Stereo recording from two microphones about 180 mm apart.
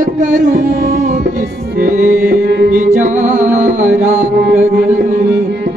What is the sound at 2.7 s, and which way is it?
Music, 45° right (ahead or behind).